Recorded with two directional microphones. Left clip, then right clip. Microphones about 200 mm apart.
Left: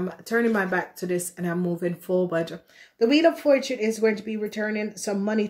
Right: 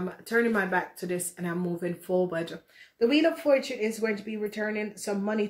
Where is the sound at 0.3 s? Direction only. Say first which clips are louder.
Left 2 dB; 50° left (ahead or behind).